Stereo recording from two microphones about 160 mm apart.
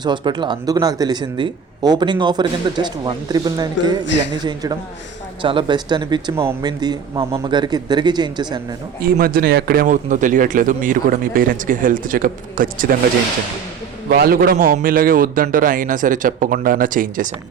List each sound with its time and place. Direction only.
0.0 s a man's voice: 30° right (ahead or behind)
9.0 s speech: 65° right (ahead or behind)
9.8 s speech: 55° right (ahead or behind)
14.1 s speech: 65° right (ahead or behind)